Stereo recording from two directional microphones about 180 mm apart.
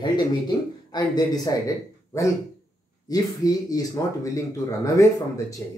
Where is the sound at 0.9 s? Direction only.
20° left (ahead or behind).